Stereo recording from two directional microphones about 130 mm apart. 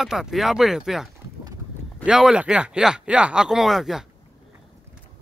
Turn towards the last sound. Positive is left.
turn(degrees=-5)  # may be behind; listen again after turning